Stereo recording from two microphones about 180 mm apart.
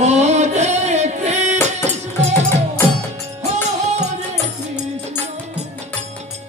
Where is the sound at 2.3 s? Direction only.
15° left (ahead or behind).